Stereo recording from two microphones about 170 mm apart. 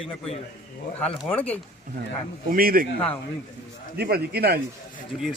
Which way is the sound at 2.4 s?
60° right (ahead or behind).